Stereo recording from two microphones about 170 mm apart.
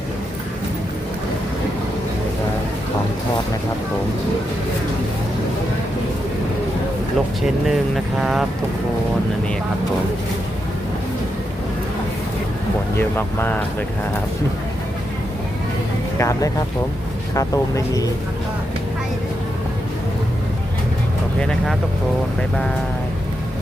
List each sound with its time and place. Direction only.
7.4 s speech: 5° right (ahead or behind)
13.0 s speech: 10° left (ahead or behind)
16.1 s speech: 20° left (ahead or behind)